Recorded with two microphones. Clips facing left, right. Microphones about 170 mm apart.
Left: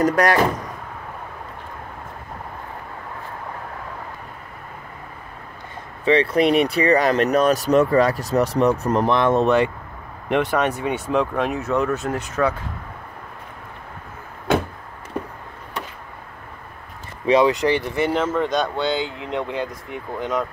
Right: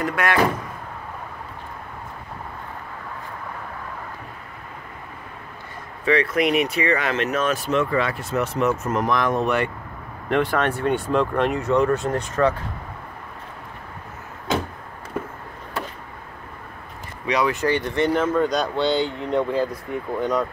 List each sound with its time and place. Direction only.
0.0 s speech: 40° left (ahead or behind)
6.0 s speech: 30° left (ahead or behind)
10.3 s speech: 10° left (ahead or behind)
17.3 s speech: 25° left (ahead or behind); by 20.4 s centre (ahead or behind)